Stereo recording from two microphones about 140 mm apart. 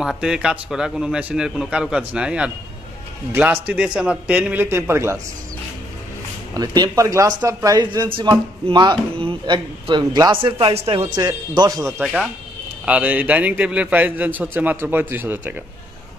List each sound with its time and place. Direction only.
0.0 s a man's voice: 5° right (ahead or behind)
6.5 s speech: 30° right (ahead or behind)
11.1 s speech: 30° right (ahead or behind)
12.0 s a man's voice: 5° right (ahead or behind)